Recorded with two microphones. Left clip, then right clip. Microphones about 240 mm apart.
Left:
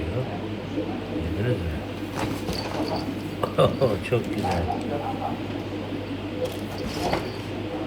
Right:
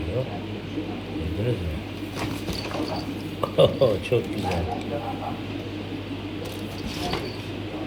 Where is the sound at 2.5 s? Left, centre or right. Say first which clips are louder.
Left 1 dB; centre.